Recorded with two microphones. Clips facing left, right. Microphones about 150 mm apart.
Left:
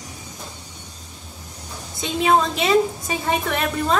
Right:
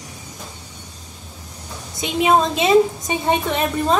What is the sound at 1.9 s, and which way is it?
A woman's voice, 20° right (ahead or behind).